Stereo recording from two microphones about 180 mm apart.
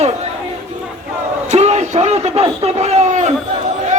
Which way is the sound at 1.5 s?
40° right (ahead or behind).